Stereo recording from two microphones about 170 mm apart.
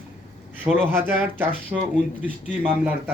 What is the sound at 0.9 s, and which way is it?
Speech, 10° right (ahead or behind).